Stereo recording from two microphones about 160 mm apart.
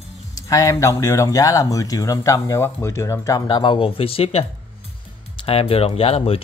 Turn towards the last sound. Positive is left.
turn(degrees=35)  # may be behind; listen again after turning